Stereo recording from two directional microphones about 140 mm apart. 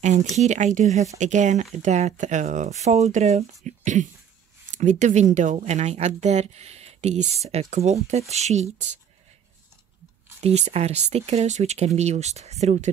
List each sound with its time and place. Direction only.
0.0 s speech: 55° right (ahead or behind)
10.4 s speech: 50° right (ahead or behind)